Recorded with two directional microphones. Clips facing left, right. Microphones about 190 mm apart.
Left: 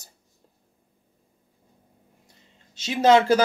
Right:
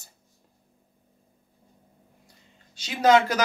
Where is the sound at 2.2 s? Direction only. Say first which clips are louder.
Even; 25° left (ahead or behind).